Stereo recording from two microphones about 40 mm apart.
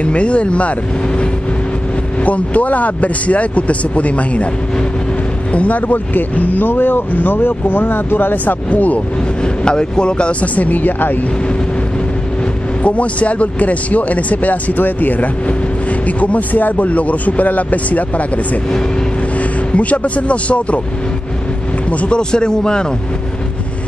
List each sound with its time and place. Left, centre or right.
0.0 s speech: left
8.6 s speech: left
9.4 s speech: left
10.4 s speech: left
12.8 s speech: left
21.9 s speech: left
22.3 s speech: left